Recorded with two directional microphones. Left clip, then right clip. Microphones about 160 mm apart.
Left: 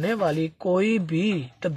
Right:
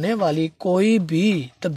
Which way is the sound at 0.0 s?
25° right (ahead or behind).